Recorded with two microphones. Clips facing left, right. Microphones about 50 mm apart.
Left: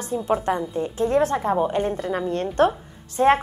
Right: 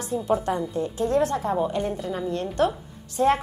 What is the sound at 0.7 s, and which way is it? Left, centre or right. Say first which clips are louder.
A woman's voice: left 2 dB; left.